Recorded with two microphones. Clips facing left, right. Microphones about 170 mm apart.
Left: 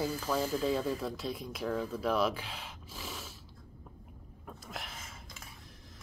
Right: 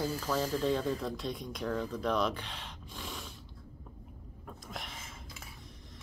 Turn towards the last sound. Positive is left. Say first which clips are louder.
# even
turn(degrees=0)  # may be behind; listen again after turning